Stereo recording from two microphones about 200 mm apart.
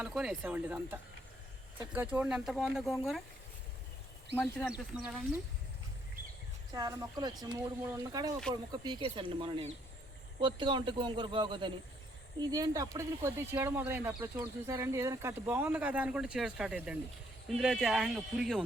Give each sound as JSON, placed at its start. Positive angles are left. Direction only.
{"t": 0.0, "sound": "speech", "side_deg": -5}
{"t": 4.4, "sound": "speech", "side_deg": 10}
{"t": 4.9, "sound": "speech", "side_deg": -5}
{"t": 6.7, "sound": "speech", "side_deg": -20}